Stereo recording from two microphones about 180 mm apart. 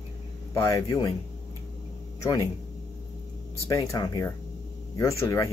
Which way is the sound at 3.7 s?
20° left (ahead or behind).